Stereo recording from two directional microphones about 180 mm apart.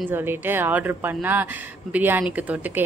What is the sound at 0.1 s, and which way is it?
A woman's voice, 10° right (ahead or behind).